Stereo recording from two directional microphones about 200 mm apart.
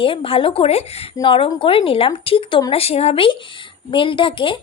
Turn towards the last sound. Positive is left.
turn(degrees=25)  # may be behind; listen again after turning